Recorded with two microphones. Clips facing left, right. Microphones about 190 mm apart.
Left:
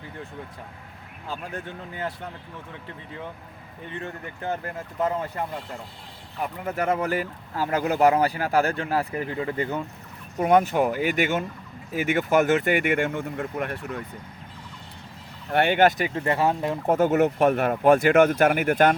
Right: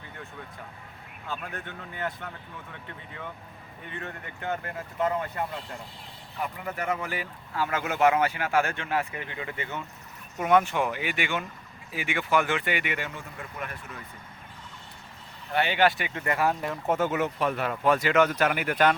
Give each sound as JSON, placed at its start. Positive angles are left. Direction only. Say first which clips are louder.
{"t": 1.3, "sound": "speech", "louder": "left 3 dB", "side_deg": 30}
{"t": 3.9, "sound": "speech", "louder": "left 4 dB", "side_deg": 35}
{"t": 6.7, "sound": "speech", "louder": "left 8 dB", "side_deg": 45}
{"t": 15.5, "sound": "speech", "louder": "left 5 dB", "side_deg": 50}